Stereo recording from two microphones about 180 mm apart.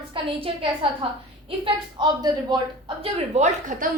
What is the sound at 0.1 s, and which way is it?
A woman's voice, 30° right (ahead or behind).